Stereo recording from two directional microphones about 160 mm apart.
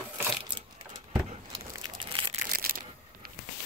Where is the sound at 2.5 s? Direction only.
65° right (ahead or behind).